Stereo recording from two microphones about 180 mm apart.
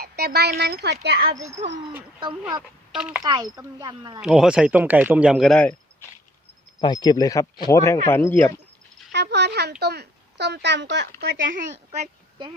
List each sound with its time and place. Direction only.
0.0 s a sound: 60° right (ahead or behind)
0.6 s speech: 65° right (ahead or behind)
2.6 s speech: 5° right (ahead or behind)
3.2 s speech: 20° right (ahead or behind)
4.2 s a man's voice: 5° right (ahead or behind)
6.7 s speech: 25° left (ahead or behind)
9.1 s a sound: 70° right (ahead or behind)
9.8 s a child's voice: 65° right (ahead or behind)
11.2 s speech: 60° right (ahead or behind)
11.7 s speech: 35° right (ahead or behind)